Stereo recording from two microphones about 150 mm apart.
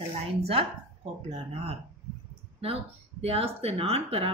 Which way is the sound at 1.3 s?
40° right (ahead or behind).